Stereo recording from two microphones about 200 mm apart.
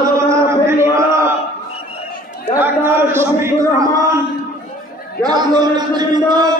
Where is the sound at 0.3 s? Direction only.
15° right (ahead or behind).